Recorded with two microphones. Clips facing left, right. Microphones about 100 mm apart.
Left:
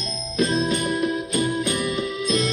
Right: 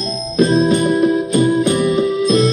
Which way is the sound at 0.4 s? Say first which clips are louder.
Right 9 dB; 30° right (ahead or behind).